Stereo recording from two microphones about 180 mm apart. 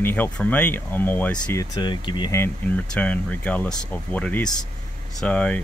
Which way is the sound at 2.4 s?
5° left (ahead or behind).